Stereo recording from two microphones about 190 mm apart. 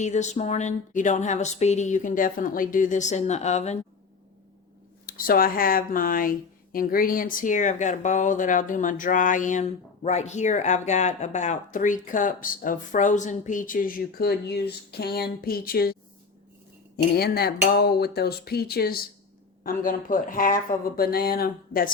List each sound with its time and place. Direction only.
0.0 s a woman's voice: 40° left (ahead or behind)
5.0 s speech: 50° left (ahead or behind)
17.2 s speech: 55° left (ahead or behind)